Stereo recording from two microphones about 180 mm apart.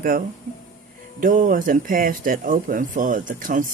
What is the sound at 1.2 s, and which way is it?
Speech, 50° right (ahead or behind).